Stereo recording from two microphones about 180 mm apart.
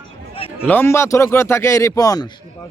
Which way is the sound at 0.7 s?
10° left (ahead or behind).